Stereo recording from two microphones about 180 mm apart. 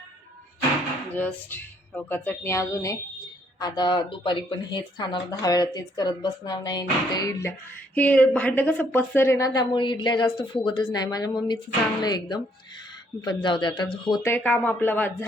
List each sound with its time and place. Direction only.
1.1 s a woman's voice: 10° left (ahead or behind); by 14.2 s 25° left (ahead or behind)
14.2 s a woman's voice: 10° left (ahead or behind)